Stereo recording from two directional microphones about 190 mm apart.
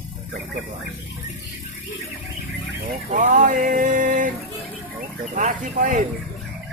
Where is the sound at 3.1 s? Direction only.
40° right (ahead or behind).